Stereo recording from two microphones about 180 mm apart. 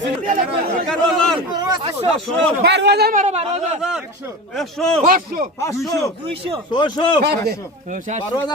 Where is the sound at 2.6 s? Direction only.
65° right (ahead or behind); by 3.8 s 40° right (ahead or behind).